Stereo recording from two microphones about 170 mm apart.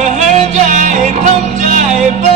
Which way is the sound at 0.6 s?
45° right (ahead or behind).